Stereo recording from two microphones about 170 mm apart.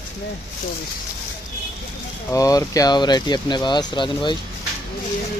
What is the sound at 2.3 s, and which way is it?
Speech, 20° left (ahead or behind).